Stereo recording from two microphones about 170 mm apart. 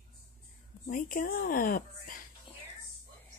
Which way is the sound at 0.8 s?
55° left (ahead or behind).